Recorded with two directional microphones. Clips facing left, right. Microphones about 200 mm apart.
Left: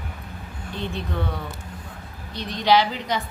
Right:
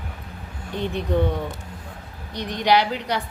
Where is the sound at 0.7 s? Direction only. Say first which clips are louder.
Right 4 dB; 15° right (ahead or behind).